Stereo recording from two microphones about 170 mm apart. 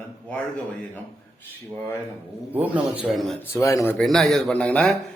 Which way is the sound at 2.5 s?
10° right (ahead or behind).